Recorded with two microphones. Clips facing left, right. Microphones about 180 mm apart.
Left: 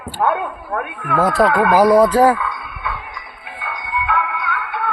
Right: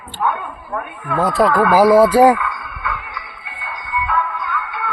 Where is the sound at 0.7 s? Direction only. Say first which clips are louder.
Left 1 dB; 75° left (ahead or behind).